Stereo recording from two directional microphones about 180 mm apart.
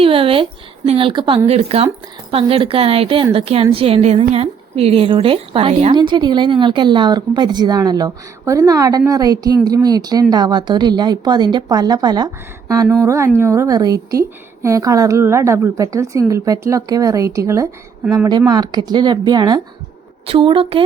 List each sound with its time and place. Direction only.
0.0 s a woman's voice: 30° right (ahead or behind)